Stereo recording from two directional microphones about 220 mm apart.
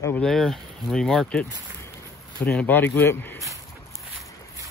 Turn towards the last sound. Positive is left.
turn(degrees=10)  # may be behind; listen again after turning